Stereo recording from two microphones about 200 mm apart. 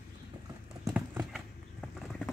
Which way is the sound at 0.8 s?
10° right (ahead or behind).